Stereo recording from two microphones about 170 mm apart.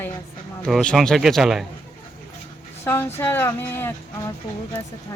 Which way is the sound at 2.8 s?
15° left (ahead or behind).